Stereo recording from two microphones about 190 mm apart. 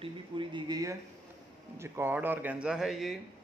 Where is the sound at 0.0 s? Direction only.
25° right (ahead or behind); by 3.2 s centre (ahead or behind).